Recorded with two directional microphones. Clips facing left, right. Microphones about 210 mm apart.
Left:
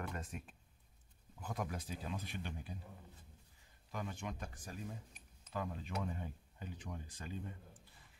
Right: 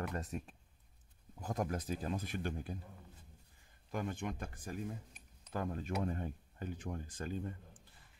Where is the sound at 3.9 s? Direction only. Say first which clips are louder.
Right 5 dB; 55° right (ahead or behind).